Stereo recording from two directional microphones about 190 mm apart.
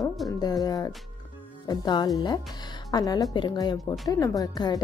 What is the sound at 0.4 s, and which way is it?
Speech, 20° left (ahead or behind).